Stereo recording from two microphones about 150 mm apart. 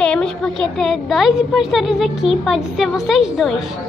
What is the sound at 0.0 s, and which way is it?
A woman's voice, 5° left (ahead or behind).